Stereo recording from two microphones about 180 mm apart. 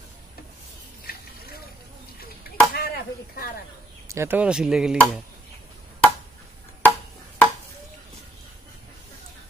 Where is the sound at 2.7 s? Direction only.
60° left (ahead or behind).